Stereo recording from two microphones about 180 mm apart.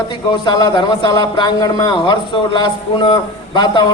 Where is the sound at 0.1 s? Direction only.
25° left (ahead or behind).